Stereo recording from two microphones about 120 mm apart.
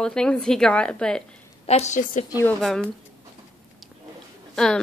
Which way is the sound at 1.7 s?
75° left (ahead or behind).